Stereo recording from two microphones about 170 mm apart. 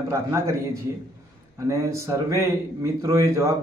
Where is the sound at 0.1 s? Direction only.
15° right (ahead or behind).